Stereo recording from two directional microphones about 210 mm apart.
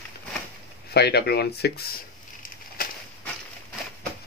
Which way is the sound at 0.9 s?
50° left (ahead or behind).